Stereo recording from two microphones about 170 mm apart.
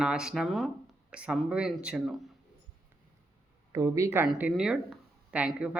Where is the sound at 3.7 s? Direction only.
20° right (ahead or behind).